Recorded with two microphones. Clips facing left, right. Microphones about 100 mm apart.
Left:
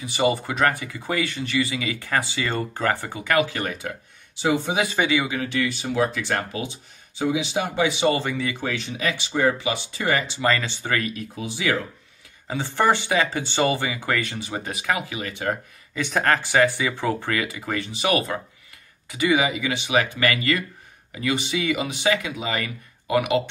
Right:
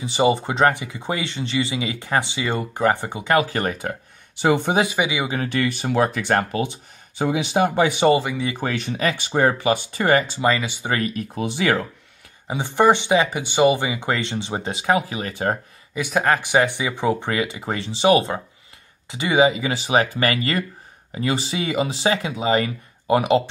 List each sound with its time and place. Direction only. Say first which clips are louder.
0.0 s speech: right 3 dB; 25° right (ahead or behind)
3.4 s speech: right 4 dB; 45° right (ahead or behind)
4.4 s speech: right 4 dB; 55° right (ahead or behind)
4.8 s speech: even; 15° right (ahead or behind)
5.3 s speech: right 2 dB; 45° right (ahead or behind)
8.1 s speech: right 5 dB; 15° right (ahead or behind)
8.5 s speech: right 4 dB; 45° right (ahead or behind)
10.4 s speech: right 2 dB; 15° right (ahead or behind)
11.0 s speech: right 3 dB; 35° right (ahead or behind)
11.3 s speech: right 4 dB; 60° right (ahead or behind)
12.4 s speech: right 4 dB; 15° right (ahead or behind); by 15.6 s 35° right (ahead or behind)
15.9 s speech: right 2 dB; 10° right (ahead or behind); by 23.4 s 30° right (ahead or behind)